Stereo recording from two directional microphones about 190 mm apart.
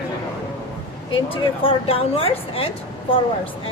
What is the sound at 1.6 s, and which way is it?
Speech, 30° left (ahead or behind).